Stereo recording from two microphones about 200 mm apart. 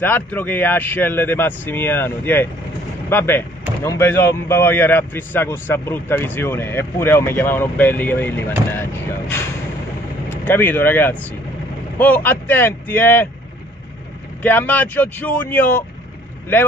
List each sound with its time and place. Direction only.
0.0 s speech: 10° left (ahead or behind)
10.3 s speech: 10° left (ahead or behind)
14.4 s speech: 10° left (ahead or behind)